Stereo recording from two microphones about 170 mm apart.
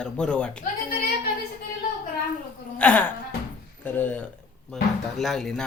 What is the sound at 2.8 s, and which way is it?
Speech, 10° left (ahead or behind).